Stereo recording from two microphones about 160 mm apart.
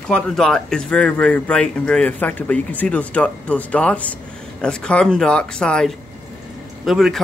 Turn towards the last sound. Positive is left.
turn(degrees=0)  # may be behind; listen again after turning